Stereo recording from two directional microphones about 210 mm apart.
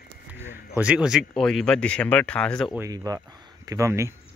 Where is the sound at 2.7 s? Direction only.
15° right (ahead or behind).